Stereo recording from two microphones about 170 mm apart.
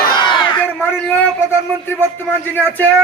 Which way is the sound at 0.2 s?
30° left (ahead or behind).